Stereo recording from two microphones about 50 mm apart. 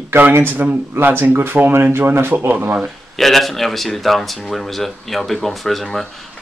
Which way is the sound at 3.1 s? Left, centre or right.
Centre.